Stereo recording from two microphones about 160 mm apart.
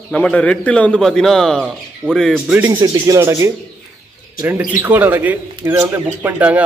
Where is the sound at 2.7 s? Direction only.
25° right (ahead or behind).